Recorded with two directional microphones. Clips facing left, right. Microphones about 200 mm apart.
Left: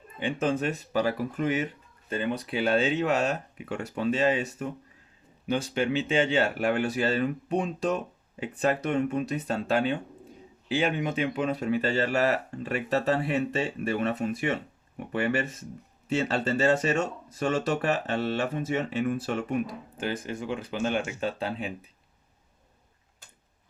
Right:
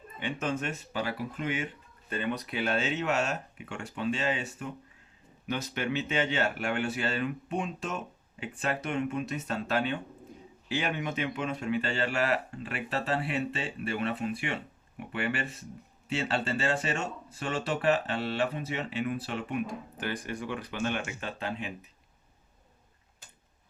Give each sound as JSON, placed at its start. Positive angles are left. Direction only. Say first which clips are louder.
{"t": 0.2, "sound": "speech", "louder": "left 5 dB", "side_deg": 30}
{"t": 20.0, "sound": "speech", "louder": "left 4 dB", "side_deg": 25}